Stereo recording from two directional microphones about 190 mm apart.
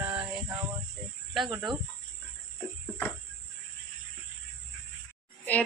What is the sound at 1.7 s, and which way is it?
Speech, 25° right (ahead or behind).